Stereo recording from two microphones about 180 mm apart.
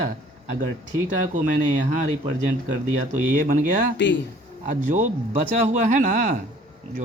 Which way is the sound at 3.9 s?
80° left.